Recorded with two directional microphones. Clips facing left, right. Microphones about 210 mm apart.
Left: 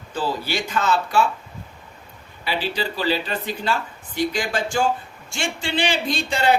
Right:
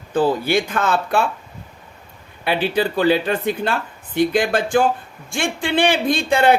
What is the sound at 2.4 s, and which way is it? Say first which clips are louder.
A woman's voice: right 6 dB; 55° right (ahead or behind).